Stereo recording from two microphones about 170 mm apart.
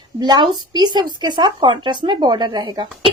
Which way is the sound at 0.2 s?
25° right (ahead or behind).